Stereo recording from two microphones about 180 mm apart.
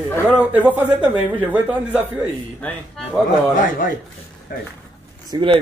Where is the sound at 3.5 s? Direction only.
50° left (ahead or behind).